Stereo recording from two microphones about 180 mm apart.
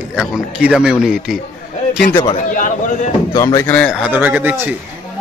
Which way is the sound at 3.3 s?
20° left (ahead or behind).